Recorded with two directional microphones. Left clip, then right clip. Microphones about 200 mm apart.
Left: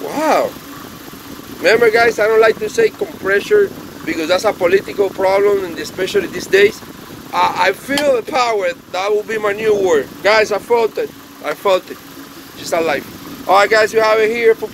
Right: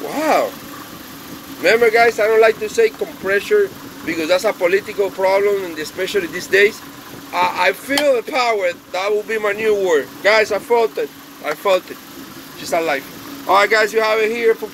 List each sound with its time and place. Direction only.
0.1 s cat: 15° left (ahead or behind)
1.6 s speech: 15° left (ahead or behind)